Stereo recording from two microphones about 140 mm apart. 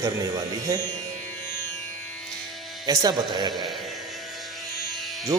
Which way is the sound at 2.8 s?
30° right (ahead or behind).